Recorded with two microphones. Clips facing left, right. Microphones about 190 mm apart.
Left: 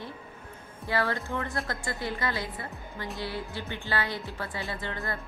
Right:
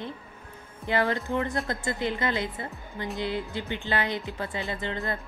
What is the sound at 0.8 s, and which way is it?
A woman's voice, 20° right (ahead or behind).